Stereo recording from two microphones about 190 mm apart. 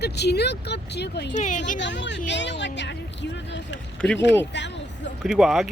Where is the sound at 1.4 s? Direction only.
40° left (ahead or behind).